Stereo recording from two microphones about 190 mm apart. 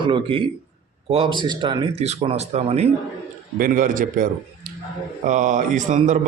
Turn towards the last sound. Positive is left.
turn(degrees=-40)  # may be behind; listen again after turning